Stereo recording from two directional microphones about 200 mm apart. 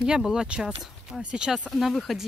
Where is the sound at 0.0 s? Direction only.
5° right (ahead or behind).